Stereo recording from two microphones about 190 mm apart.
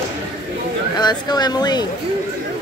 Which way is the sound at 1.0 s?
20° left (ahead or behind).